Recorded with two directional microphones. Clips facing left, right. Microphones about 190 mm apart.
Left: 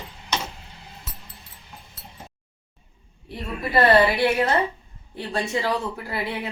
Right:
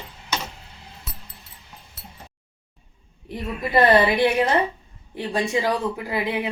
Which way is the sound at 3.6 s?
20° right (ahead or behind).